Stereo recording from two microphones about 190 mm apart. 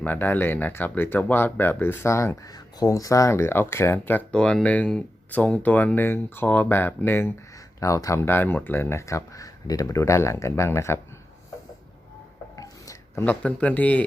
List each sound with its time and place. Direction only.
0.0 s speech: 10° left (ahead or behind)
12.5 s telephone dialing: 20° left (ahead or behind)